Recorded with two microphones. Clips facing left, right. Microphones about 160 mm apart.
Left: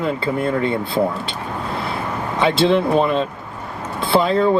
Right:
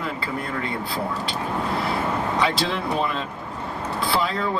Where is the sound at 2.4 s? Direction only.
25° left (ahead or behind).